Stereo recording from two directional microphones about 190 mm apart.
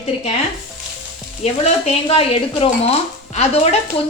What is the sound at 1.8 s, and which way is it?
A woman's voice, 30° left (ahead or behind).